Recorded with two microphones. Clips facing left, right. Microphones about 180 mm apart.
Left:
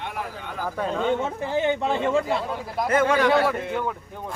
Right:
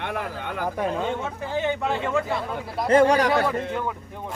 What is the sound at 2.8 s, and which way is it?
Speech, 35° right (ahead or behind).